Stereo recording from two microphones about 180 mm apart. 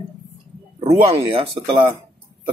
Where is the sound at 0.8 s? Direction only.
30° right (ahead or behind).